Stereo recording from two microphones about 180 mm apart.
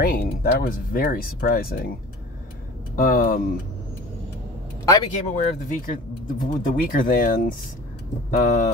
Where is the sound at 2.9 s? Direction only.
55° left (ahead or behind).